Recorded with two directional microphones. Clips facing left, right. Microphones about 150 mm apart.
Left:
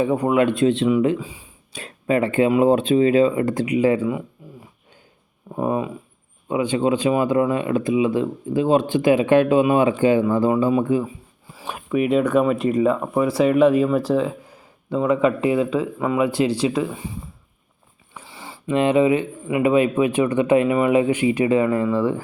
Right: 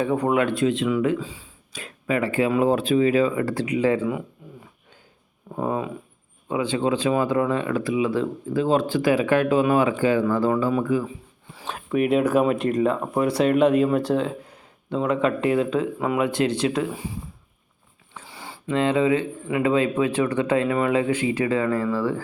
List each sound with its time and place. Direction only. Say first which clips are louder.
0.0 s speech: left 3 dB; 15° left (ahead or behind)
0.3 s speech: left 4 dB; 25° left (ahead or behind)
1.7 s speech: left 4 dB; 30° left (ahead or behind); by 4.1 s 15° left (ahead or behind)
5.5 s speech: left 3 dB; 15° left (ahead or behind)
11.0 s speech: left 2 dB; 10° left (ahead or behind)
18.1 s a sound: left 1 dB; centre (ahead or behind)
18.7 s speech: left 3 dB; 15° left (ahead or behind)